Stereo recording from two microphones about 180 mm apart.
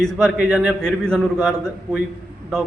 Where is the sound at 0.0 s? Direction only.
Centre (ahead or behind).